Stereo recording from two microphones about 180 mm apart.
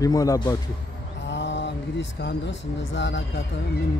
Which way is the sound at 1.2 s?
85° left.